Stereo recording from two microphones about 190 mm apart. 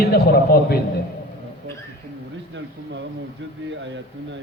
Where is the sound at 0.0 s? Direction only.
55° left (ahead or behind).